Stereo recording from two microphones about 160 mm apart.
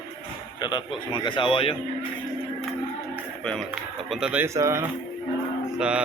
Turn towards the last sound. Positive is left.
turn(degrees=-5)  # may be behind; listen again after turning